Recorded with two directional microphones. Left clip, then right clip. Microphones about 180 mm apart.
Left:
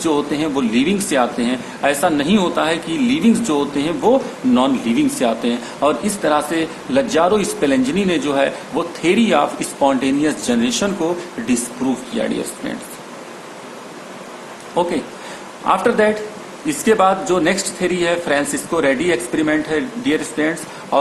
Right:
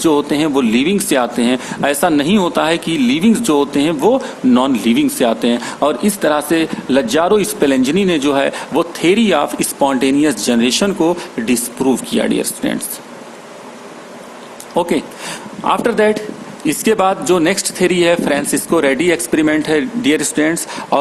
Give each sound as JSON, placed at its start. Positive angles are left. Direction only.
{"t": 0.0, "sound": "speech", "side_deg": -50}
{"t": 14.8, "sound": "speech", "side_deg": -60}